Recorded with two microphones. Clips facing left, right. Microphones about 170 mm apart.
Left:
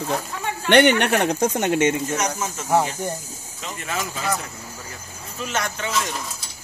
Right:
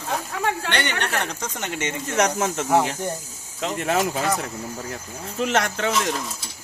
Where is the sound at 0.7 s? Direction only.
60° left (ahead or behind).